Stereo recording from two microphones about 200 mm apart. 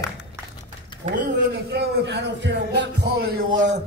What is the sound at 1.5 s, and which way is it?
A man's voice, 55° right (ahead or behind).